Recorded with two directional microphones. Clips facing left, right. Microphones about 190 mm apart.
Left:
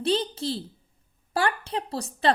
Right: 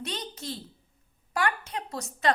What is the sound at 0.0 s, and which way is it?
A child's voice, 30° left (ahead or behind).